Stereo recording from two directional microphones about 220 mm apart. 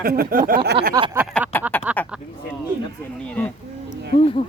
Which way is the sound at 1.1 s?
5° right (ahead or behind).